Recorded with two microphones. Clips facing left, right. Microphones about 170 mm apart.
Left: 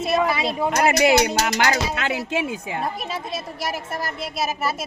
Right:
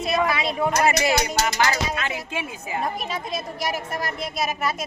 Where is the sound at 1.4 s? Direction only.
80° left.